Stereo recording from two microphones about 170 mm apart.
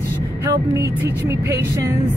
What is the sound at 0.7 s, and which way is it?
Speech, 15° right (ahead or behind).